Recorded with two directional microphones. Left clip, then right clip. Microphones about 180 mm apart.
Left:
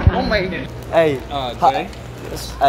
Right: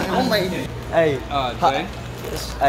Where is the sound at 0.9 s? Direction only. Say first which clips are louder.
Left 3 dB; 35° left (ahead or behind).